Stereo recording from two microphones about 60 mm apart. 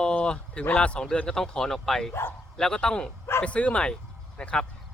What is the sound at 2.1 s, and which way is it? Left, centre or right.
Speech, left.